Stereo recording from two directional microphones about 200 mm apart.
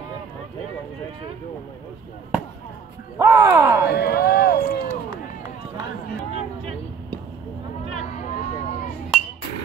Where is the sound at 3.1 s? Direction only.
15° right (ahead or behind).